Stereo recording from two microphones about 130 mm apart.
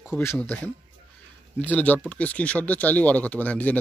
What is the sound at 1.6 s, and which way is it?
Speech, 10° left (ahead or behind).